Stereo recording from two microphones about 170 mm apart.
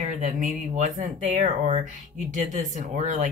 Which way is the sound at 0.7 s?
45° right (ahead or behind).